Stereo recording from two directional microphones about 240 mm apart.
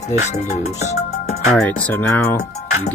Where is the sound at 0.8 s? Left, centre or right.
Left.